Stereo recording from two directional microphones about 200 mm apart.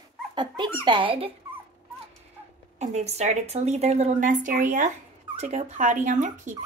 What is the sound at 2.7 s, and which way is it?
A woman's voice, 35° right (ahead or behind).